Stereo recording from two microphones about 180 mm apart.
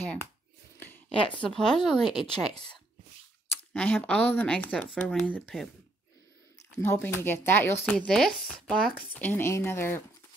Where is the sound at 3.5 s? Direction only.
10° left (ahead or behind).